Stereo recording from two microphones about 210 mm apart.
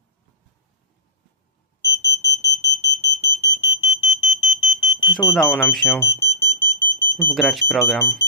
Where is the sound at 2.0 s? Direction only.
15° left (ahead or behind).